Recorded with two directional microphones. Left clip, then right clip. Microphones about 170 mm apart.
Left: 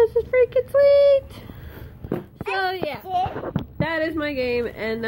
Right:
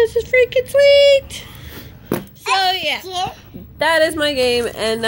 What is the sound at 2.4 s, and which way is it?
Speech, 25° left (ahead or behind).